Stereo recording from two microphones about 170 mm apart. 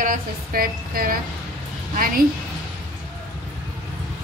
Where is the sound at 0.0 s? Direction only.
55° right (ahead or behind).